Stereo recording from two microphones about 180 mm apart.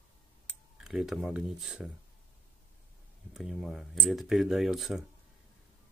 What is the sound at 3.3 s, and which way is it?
Speech, centre (ahead or behind).